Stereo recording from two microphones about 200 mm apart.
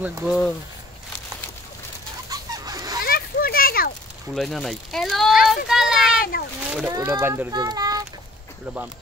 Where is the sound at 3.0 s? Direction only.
50° left (ahead or behind).